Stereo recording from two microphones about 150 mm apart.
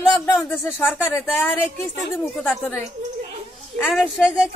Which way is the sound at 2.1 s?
5° right (ahead or behind).